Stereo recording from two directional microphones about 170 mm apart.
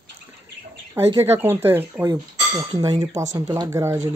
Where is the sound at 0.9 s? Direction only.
15° right (ahead or behind).